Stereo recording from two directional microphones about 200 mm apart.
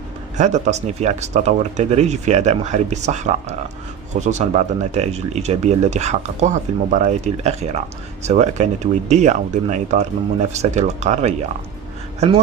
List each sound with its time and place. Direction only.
0.3 s speech: 35° right (ahead or behind)